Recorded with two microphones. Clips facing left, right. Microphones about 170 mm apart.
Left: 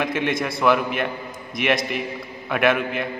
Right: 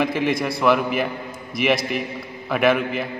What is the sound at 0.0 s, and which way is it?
A man's voice, centre (ahead or behind).